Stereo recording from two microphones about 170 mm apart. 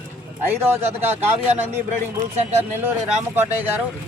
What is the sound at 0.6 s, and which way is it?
Speech, 15° right (ahead or behind).